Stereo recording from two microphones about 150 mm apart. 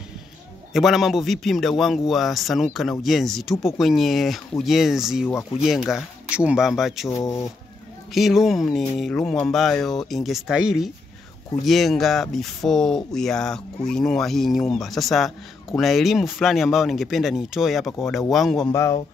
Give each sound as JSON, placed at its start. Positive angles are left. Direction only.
{"t": 0.7, "sound": "speech", "side_deg": 0}
{"t": 7.1, "sound": "speech", "side_deg": 20}
{"t": 8.1, "sound": "speech", "side_deg": 0}
{"t": 18.7, "sound": "speech", "side_deg": 20}